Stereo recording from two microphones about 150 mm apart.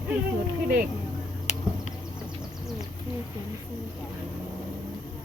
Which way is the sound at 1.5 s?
50° left (ahead or behind).